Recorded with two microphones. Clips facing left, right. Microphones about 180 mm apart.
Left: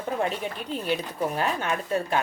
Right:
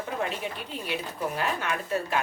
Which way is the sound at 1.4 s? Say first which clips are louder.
Left 3 dB; 30° left (ahead or behind).